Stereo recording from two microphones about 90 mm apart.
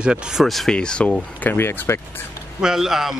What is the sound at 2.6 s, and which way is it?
Speech, 5° right (ahead or behind).